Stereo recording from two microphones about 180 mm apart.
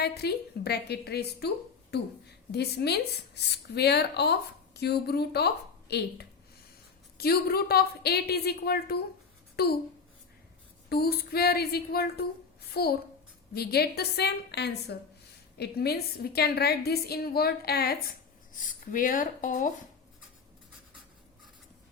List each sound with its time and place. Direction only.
0.0 s a woman's voice: 65° left (ahead or behind)
10.8 s a woman's voice: 60° left (ahead or behind)
18.6 s speech: 50° left (ahead or behind)